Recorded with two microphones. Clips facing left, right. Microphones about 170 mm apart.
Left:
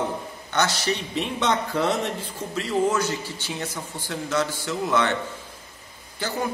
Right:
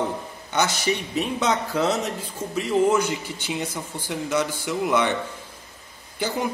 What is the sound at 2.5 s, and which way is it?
A man's voice, 15° right (ahead or behind).